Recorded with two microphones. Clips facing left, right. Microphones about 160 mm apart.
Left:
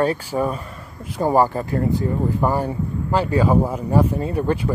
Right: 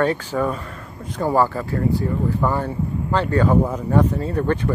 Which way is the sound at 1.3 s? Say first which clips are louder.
Left 2 dB; 15° left (ahead or behind).